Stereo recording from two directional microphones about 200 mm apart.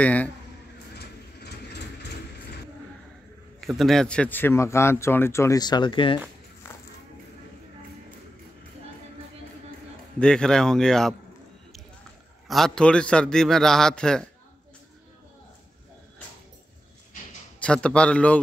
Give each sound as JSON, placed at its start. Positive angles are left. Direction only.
{"t": 0.0, "sound": "speech", "side_deg": 5}
{"t": 0.9, "sound": "vehicle", "side_deg": 55}
{"t": 3.6, "sound": "speech", "side_deg": 0}
{"t": 10.1, "sound": "a man's voice", "side_deg": 5}
{"t": 12.4, "sound": "a man's voice", "side_deg": 0}
{"t": 17.6, "sound": "a man's voice", "side_deg": 5}